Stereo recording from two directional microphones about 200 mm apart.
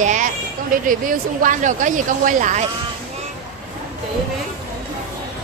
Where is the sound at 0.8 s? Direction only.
45° right (ahead or behind).